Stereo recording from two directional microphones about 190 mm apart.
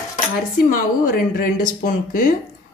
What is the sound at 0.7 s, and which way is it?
Speech, 45° left (ahead or behind).